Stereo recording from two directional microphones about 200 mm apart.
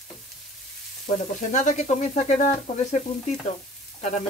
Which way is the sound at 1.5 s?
35° left (ahead or behind).